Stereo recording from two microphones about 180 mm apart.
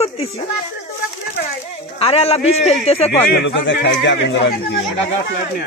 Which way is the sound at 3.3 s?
85° left.